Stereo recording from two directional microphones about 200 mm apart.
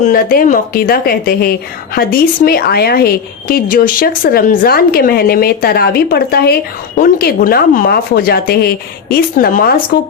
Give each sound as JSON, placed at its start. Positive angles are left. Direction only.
{"t": 0.0, "sound": "a woman's voice", "side_deg": 45}